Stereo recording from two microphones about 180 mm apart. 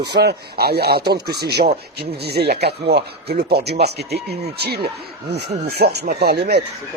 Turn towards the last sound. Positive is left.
turn(degrees=-65)  # may be behind; listen again after turning